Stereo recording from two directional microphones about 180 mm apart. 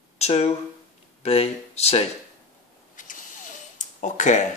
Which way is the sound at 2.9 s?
45° left (ahead or behind).